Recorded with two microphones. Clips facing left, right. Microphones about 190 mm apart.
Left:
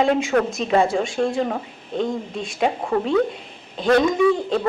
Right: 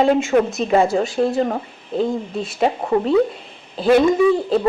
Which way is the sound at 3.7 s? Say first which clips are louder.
Right 3 dB; 5° right (ahead or behind).